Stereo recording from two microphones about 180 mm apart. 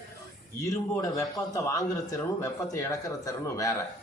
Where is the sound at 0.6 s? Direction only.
15° left (ahead or behind).